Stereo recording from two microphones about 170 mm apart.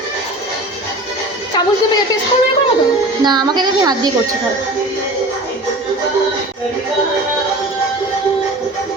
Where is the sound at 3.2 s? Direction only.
25° right (ahead or behind).